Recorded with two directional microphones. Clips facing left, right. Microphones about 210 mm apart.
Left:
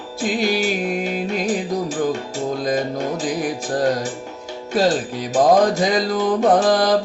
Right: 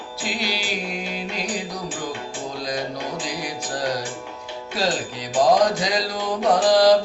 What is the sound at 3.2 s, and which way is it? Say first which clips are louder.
Music: left 7 dB; 50° left (ahead or behind).